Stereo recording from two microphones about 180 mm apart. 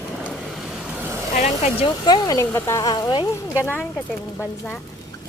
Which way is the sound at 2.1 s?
20° left (ahead or behind).